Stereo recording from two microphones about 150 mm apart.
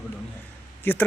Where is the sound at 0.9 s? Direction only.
15° left (ahead or behind).